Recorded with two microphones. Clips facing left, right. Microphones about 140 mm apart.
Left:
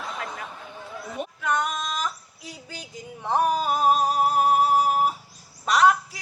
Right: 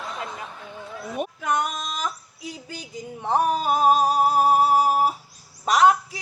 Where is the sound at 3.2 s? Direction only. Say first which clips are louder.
Right 1 dB; 35° right (ahead or behind).